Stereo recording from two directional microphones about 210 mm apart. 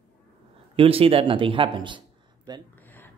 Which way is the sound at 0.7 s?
25° right (ahead or behind).